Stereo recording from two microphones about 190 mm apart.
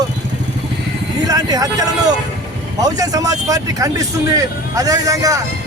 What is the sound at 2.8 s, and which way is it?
Speech, 20° right (ahead or behind).